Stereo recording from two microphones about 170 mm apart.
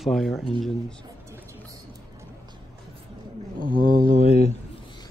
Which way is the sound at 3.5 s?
55° right (ahead or behind).